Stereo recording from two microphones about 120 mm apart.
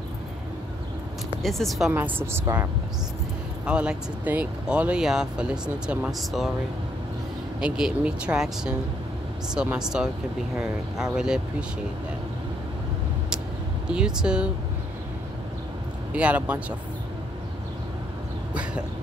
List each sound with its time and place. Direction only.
1.4 s speech: centre (ahead or behind)
1.9 s speech: 15° right (ahead or behind)
3.6 s speech: 10° right (ahead or behind)
7.6 s speech: 5° right (ahead or behind)
11.1 s speech: 5° right (ahead or behind)
13.8 s speech: 5° right (ahead or behind)
16.1 s speech: 10° right (ahead or behind)
18.5 s cough: 10° right (ahead or behind)